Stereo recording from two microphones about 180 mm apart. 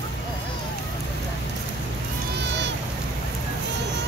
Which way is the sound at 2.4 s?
75° right (ahead or behind).